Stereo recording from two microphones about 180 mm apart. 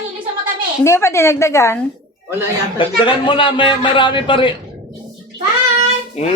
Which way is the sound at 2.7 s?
25° left (ahead or behind).